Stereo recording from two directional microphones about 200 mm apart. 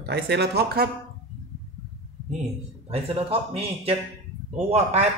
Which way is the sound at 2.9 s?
30° right (ahead or behind).